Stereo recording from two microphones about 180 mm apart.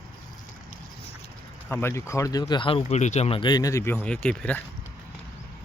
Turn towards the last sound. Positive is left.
turn(degrees=5)  # may be behind; listen again after turning